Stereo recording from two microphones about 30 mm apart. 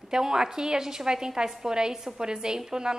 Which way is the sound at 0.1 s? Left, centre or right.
Right.